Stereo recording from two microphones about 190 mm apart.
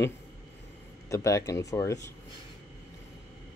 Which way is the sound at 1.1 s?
15° left (ahead or behind).